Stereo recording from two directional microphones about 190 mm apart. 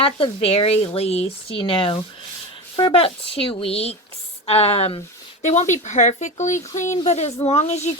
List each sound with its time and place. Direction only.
0.0 s speech: 30° left (ahead or behind)